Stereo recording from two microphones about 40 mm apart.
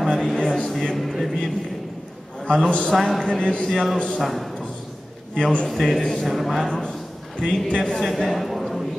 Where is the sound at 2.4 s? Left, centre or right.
Left.